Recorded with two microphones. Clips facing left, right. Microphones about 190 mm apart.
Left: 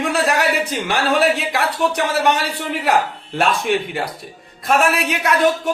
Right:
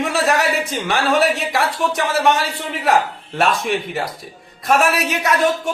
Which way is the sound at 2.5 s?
65° left (ahead or behind).